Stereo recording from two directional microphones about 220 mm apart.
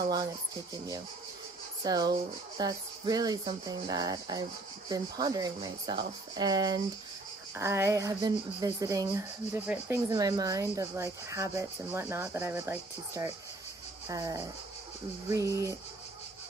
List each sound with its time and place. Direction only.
1.8 s speech: 15° right (ahead or behind)